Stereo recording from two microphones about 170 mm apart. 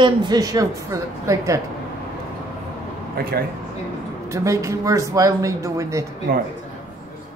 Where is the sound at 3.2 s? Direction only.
60° right (ahead or behind).